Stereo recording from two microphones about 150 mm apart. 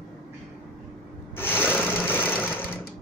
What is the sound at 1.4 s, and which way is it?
Sewing machine, 15° left (ahead or behind).